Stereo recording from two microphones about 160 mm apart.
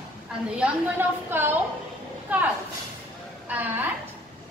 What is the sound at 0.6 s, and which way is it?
A woman's voice, 10° right (ahead or behind).